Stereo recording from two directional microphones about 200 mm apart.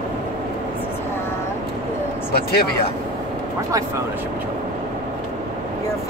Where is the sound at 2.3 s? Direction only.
50° left (ahead or behind).